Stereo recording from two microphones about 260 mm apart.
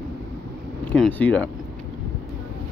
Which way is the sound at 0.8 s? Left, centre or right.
Centre.